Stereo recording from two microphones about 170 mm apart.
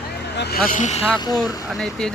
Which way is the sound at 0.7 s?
45° left (ahead or behind).